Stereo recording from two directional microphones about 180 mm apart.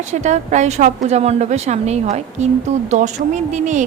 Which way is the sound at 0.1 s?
40° right (ahead or behind).